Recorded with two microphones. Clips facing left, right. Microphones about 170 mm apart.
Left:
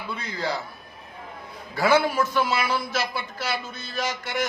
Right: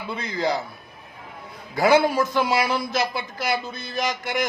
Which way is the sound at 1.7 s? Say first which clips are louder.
Right 3 dB; 15° right (ahead or behind).